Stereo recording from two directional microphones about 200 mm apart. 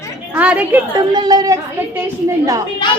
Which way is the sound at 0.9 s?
20° right (ahead or behind).